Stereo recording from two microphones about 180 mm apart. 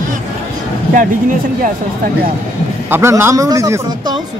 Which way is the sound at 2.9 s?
15° right (ahead or behind).